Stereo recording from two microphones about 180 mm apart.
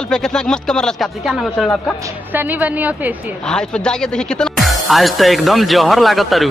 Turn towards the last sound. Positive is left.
turn(degrees=0)  # may be behind; listen again after turning